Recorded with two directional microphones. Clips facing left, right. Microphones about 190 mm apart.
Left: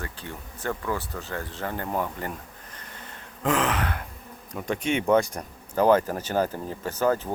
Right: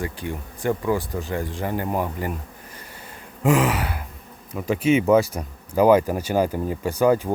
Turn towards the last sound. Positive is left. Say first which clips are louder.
# right 5 dB
turn(degrees=-10)  # may be behind; listen again after turning